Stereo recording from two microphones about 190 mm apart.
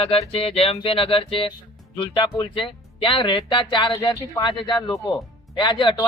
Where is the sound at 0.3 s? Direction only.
30° left (ahead or behind).